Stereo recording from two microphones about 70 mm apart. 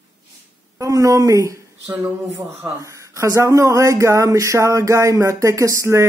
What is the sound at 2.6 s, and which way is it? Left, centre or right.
Speech, right.